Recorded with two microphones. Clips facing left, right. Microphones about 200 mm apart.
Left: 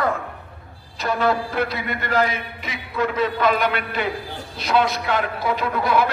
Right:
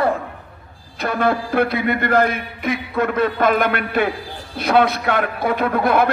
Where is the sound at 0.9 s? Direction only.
55° right (ahead or behind).